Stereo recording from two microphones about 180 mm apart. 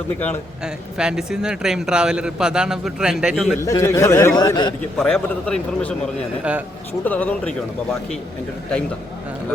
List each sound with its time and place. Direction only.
0.6 s speech: 5° right (ahead or behind)
3.6 s a man's voice: 15° left (ahead or behind)
4.9 s speech: centre (ahead or behind)
6.4 s a man's voice: 10° right (ahead or behind)
7.0 s a man's voice: 10° left (ahead or behind)